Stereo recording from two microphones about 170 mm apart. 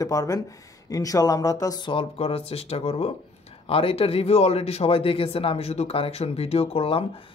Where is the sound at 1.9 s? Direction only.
35° left (ahead or behind).